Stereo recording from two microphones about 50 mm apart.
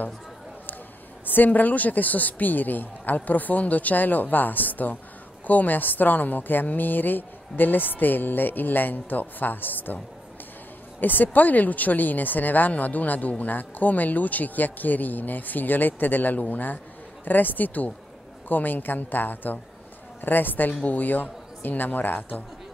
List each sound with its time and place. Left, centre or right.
1.2 s a woman's voice: left
11.0 s a woman's voice: left